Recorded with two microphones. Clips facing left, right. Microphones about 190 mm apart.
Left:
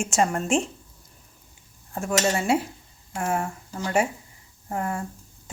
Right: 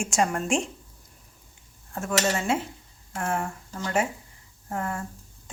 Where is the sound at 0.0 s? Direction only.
5° left (ahead or behind).